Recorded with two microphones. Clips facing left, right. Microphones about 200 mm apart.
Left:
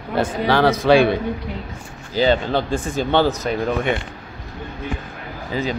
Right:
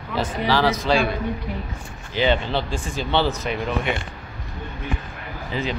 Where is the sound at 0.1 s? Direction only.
55° left (ahead or behind).